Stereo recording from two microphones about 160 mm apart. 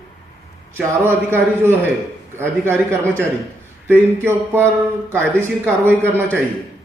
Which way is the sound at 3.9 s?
15° right (ahead or behind).